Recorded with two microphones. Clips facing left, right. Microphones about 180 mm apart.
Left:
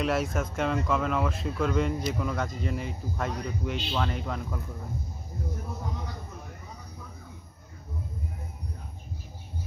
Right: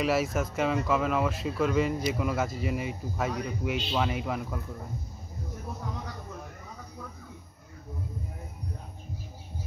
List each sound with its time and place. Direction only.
0.0 s speech: centre (ahead or behind)